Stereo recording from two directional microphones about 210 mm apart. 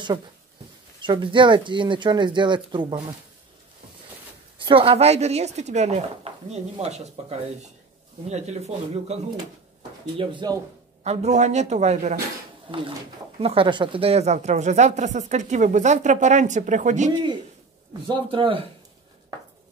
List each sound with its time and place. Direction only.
1.0 s speech: 20° right (ahead or behind)
4.6 s a woman's voice: 25° right (ahead or behind)
11.1 s a woman's voice: 35° right (ahead or behind)
13.4 s a woman's voice: 25° right (ahead or behind)
18.0 s speech: 25° right (ahead or behind)